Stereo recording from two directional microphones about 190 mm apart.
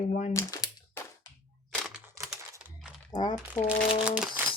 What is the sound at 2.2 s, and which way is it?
Typing, 15° right (ahead or behind).